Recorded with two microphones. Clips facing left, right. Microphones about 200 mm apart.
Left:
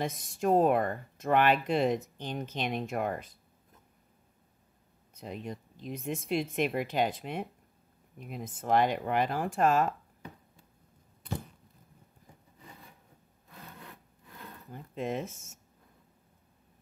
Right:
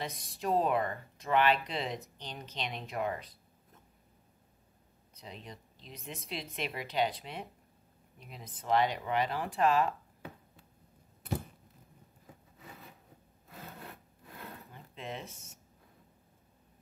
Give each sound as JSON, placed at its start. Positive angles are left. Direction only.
{"t": 0.0, "sound": "speech", "side_deg": 50}
{"t": 5.1, "sound": "speech", "side_deg": 50}
{"t": 14.7, "sound": "a sound", "side_deg": 45}